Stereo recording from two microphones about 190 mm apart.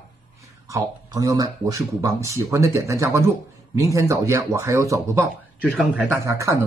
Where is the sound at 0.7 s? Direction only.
20° right (ahead or behind).